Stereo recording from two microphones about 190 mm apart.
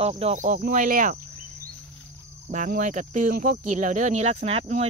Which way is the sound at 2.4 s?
40° right (ahead or behind).